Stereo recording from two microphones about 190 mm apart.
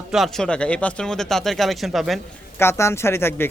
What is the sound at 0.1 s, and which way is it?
A man's voice, centre (ahead or behind).